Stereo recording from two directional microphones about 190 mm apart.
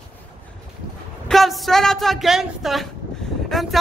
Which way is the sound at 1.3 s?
Centre (ahead or behind).